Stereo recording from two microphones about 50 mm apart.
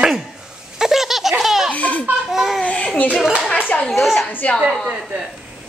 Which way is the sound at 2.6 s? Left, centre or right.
Left.